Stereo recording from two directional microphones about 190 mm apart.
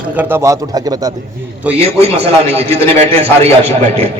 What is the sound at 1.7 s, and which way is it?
A man's voice, 35° right (ahead or behind).